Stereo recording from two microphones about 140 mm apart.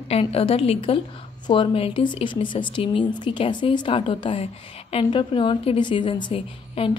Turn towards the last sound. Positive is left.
turn(degrees=40)  # may be behind; listen again after turning